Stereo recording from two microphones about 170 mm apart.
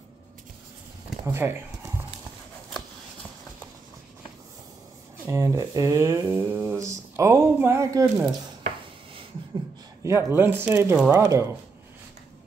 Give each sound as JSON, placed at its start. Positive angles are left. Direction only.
{"t": 1.2, "sound": "speech", "side_deg": -15}
{"t": 5.2, "sound": "speech", "side_deg": -15}
{"t": 10.0, "sound": "speech", "side_deg": -15}